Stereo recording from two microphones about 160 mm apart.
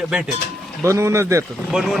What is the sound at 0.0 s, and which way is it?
Speech, 5° right (ahead or behind).